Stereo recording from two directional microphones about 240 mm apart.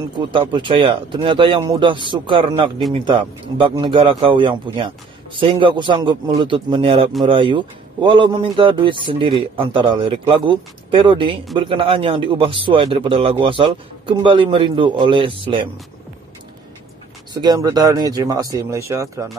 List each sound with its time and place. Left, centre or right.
0.3 s speech: right
17.3 s speech: centre